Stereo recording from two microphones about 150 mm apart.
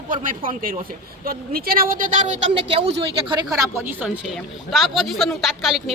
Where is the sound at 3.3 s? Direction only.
25° right (ahead or behind).